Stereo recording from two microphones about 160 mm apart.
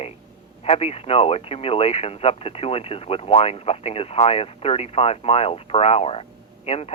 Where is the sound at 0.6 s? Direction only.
40° left (ahead or behind).